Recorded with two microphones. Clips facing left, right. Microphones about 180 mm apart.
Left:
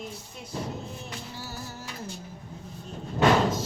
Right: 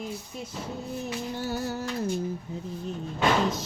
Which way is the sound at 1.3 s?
60° right (ahead or behind).